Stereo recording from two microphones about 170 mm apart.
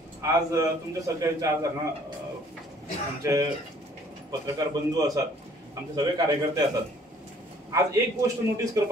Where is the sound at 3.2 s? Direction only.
20° right (ahead or behind).